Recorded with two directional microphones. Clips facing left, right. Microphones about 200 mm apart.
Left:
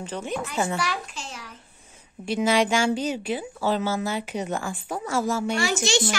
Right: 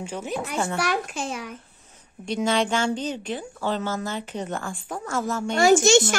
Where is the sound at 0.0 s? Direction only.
10° right (ahead or behind).